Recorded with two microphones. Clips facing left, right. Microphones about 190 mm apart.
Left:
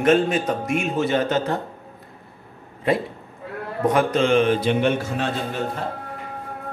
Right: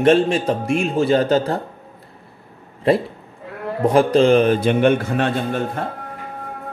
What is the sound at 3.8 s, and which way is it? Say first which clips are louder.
A man's voice: right 5 dB; 30° right (ahead or behind).